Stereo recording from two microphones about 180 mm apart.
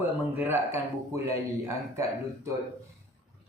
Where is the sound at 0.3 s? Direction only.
10° right (ahead or behind).